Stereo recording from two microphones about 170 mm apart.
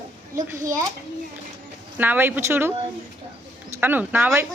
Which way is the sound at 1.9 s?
10° right (ahead or behind).